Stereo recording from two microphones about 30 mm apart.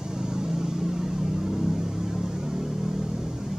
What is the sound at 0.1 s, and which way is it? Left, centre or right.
Vehicle, right.